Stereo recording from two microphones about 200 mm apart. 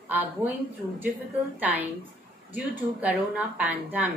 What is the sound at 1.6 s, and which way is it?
Speech, 10° right (ahead or behind).